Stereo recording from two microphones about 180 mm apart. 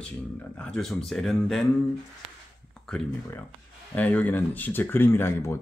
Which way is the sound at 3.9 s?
10° left (ahead or behind).